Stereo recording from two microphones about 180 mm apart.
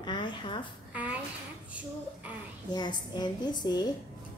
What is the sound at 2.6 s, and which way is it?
A woman's voice, 25° left (ahead or behind).